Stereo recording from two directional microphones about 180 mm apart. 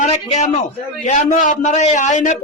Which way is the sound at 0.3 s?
40° left (ahead or behind).